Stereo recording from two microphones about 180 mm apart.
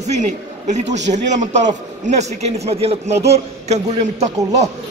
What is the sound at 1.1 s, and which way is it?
A man's voice, 40° right (ahead or behind).